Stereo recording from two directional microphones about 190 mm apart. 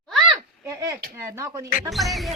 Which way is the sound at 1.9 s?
Centre (ahead or behind).